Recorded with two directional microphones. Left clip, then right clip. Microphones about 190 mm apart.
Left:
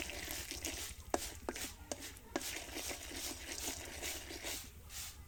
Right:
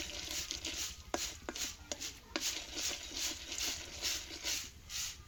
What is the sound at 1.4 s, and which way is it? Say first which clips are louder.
Chopping: right 2 dB; 15° left (ahead or behind).